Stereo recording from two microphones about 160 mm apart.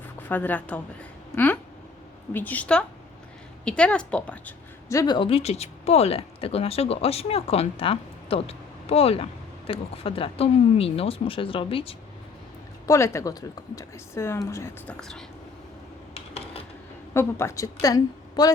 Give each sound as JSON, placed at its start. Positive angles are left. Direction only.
{"t": 0.3, "sound": "speech", "side_deg": 10}
{"t": 2.3, "sound": "speech", "side_deg": 10}
{"t": 4.9, "sound": "speech", "side_deg": 25}
{"t": 12.8, "sound": "speech", "side_deg": 20}
{"t": 14.8, "sound": "speech", "side_deg": 5}
{"t": 16.1, "sound": "a sound", "side_deg": 35}
{"t": 17.2, "sound": "a woman's voice", "side_deg": 15}